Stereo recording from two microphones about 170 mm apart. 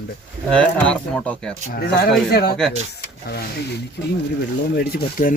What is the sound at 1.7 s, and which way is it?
Speech, 70° left (ahead or behind).